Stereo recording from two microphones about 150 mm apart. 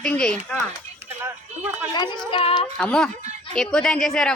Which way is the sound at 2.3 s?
35° left (ahead or behind).